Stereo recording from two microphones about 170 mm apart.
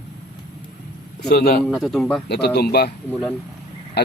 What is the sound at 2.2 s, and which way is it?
Speech, 75° left (ahead or behind).